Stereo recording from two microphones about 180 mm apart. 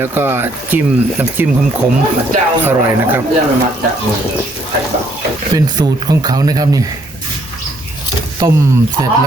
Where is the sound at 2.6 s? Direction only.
10° right (ahead or behind).